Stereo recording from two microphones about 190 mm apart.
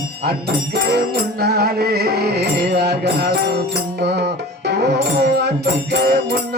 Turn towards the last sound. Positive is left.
turn(degrees=-60)  # may be behind; listen again after turning